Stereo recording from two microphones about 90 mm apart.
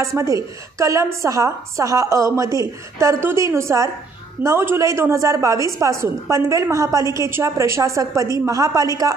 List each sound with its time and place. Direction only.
0.0 s a woman's voice: 35° right (ahead or behind)